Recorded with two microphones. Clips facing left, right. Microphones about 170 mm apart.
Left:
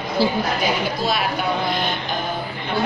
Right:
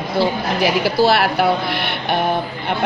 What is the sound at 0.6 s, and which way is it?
A woman's voice, 75° right (ahead or behind).